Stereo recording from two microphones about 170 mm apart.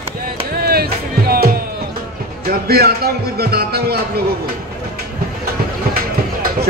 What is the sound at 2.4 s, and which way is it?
A man's voice, 65° right (ahead or behind).